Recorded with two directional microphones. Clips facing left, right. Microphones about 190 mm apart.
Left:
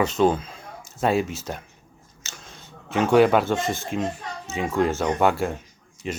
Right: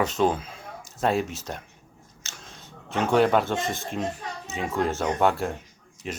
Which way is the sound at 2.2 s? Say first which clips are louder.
Left 1 dB; centre (ahead or behind).